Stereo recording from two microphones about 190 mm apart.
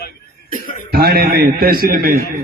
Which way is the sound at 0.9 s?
55° right (ahead or behind).